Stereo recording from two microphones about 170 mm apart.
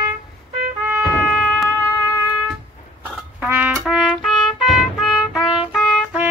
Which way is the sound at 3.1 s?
10° right (ahead or behind).